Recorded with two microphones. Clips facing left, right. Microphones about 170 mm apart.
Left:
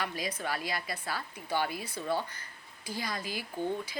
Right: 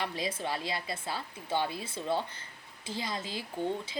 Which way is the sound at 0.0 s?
25° right (ahead or behind).